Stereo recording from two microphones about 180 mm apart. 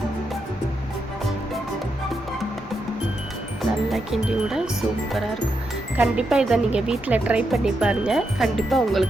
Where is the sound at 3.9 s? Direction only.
Centre (ahead or behind).